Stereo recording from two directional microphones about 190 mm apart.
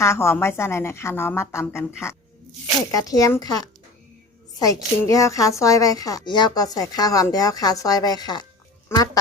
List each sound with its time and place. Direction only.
0.0 s a woman's voice: 15° left (ahead or behind)
4.6 s a woman's voice: 15° left (ahead or behind)